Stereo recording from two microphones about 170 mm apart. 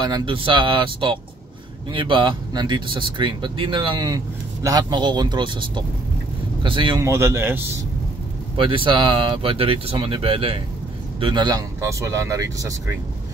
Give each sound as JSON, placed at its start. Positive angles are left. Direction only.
{"t": 0.0, "sound": "speech", "side_deg": -25}
{"t": 7.0, "sound": "a man's voice", "side_deg": -15}
{"t": 8.5, "sound": "speech", "side_deg": -30}